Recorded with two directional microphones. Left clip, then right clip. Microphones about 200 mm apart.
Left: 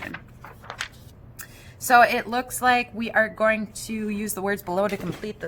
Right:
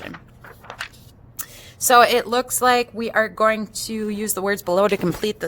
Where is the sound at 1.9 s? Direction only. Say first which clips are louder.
Right 3 dB; 50° right (ahead or behind).